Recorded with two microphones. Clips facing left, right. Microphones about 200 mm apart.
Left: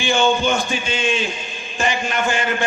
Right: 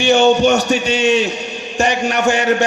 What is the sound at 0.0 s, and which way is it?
A man's voice, 70° right (ahead or behind).